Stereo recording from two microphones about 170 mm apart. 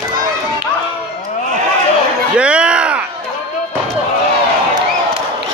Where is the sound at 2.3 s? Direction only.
5° right (ahead or behind).